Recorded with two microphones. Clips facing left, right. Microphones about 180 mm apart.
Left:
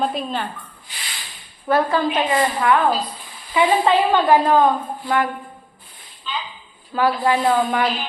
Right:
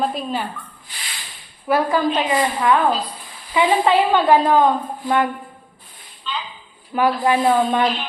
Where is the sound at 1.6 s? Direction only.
10° right (ahead or behind).